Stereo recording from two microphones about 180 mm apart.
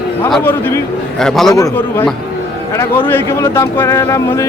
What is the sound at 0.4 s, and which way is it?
Speech, 10° left (ahead or behind).